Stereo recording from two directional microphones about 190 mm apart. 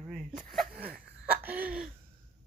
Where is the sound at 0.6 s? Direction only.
50° right (ahead or behind).